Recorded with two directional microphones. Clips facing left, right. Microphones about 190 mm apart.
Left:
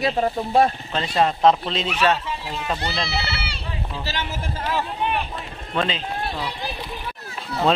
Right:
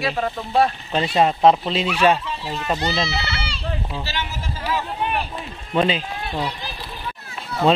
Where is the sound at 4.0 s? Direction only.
45° left (ahead or behind).